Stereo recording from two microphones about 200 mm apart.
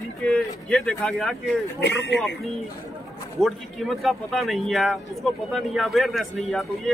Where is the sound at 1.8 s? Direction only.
60° left (ahead or behind).